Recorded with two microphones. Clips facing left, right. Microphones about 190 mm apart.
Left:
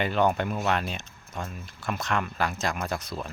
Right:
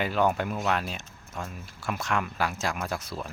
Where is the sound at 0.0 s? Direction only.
5° right (ahead or behind).